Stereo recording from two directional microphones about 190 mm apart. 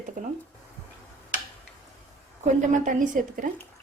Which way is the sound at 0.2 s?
40° right (ahead or behind).